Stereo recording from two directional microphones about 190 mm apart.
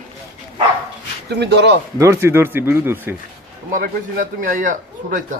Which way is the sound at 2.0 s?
15° right (ahead or behind).